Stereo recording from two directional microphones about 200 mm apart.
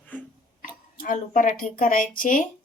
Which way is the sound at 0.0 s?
10° left (ahead or behind).